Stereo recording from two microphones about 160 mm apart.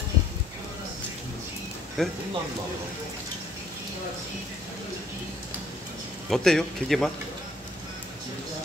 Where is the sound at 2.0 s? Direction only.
5° left (ahead or behind).